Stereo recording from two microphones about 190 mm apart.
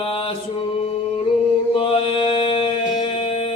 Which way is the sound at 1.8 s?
30° left (ahead or behind).